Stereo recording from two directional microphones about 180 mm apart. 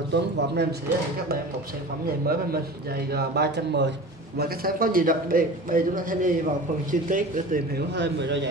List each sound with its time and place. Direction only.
0.1 s speech: 70° right (ahead or behind)
2.2 s speech: 60° right (ahead or behind)
4.4 s a man's voice: 55° right (ahead or behind)
7.9 s speech: 75° right (ahead or behind)